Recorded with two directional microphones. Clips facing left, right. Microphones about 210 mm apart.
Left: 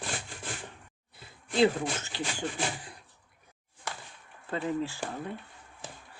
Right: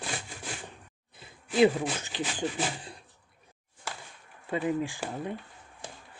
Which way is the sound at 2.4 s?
20° right (ahead or behind).